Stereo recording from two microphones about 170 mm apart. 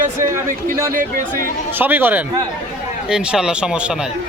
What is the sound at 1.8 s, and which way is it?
A man's voice, 10° right (ahead or behind).